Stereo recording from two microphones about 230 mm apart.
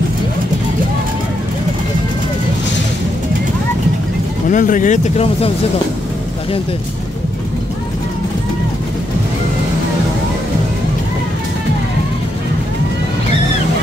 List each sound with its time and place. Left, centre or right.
4.5 s speech: left